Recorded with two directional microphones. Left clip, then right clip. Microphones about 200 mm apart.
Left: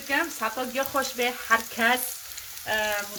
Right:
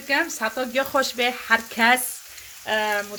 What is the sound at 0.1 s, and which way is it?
Frying, 40° right (ahead or behind).